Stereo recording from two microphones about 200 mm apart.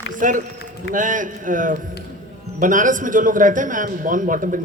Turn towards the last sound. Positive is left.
turn(degrees=-40)  # may be behind; listen again after turning